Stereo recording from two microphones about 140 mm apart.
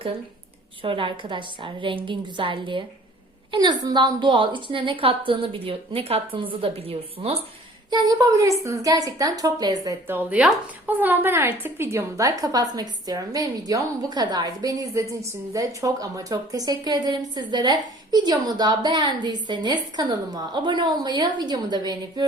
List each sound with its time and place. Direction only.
0.8 s a woman's voice: 40° right (ahead or behind)
7.9 s a woman's voice: 30° right (ahead or behind)
10.1 s a woman's voice: 10° right (ahead or behind); by 22.2 s 30° right (ahead or behind)